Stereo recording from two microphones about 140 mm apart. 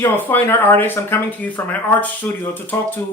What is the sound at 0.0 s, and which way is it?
Speech, 15° left (ahead or behind).